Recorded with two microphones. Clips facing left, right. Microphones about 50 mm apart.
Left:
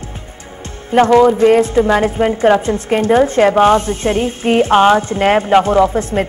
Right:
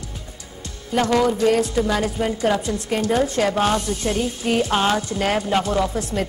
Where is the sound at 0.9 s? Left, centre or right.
Left.